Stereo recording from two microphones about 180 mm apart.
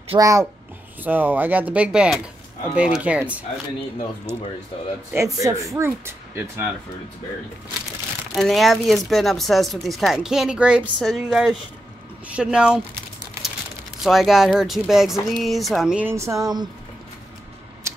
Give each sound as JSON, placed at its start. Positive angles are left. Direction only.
{"t": 0.2, "sound": "speech", "side_deg": -15}
{"t": 5.1, "sound": "speech", "side_deg": -15}
{"t": 8.4, "sound": "speech", "side_deg": 0}
{"t": 14.0, "sound": "speech", "side_deg": 0}
{"t": 17.9, "sound": "a sound", "side_deg": -15}